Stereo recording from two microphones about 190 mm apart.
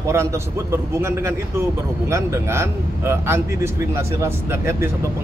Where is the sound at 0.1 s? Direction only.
15° right (ahead or behind).